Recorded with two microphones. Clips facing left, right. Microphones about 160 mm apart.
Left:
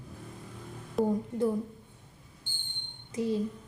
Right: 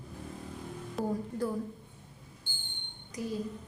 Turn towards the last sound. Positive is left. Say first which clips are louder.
# left 6 dB
turn(degrees=25)  # may be behind; listen again after turning